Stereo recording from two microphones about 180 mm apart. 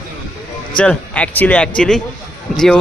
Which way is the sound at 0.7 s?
5° left (ahead or behind).